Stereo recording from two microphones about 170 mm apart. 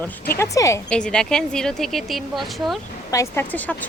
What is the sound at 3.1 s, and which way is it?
Speech, 15° left (ahead or behind).